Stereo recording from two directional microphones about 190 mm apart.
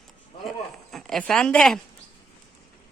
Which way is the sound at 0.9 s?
Centre (ahead or behind).